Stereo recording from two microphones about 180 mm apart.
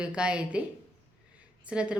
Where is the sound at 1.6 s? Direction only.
5° right (ahead or behind).